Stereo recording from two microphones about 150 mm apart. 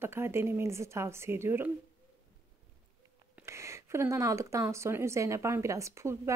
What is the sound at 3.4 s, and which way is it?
Speech, 20° right (ahead or behind).